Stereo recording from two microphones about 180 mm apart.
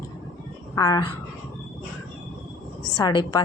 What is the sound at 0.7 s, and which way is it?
Speech, 20° left (ahead or behind).